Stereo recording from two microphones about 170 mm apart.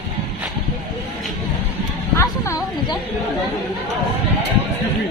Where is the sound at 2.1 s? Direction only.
15° left (ahead or behind).